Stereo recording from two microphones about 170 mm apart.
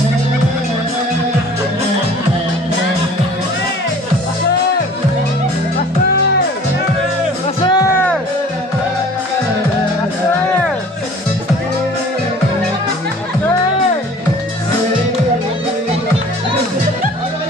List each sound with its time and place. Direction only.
7.6 s music: 25° left (ahead or behind)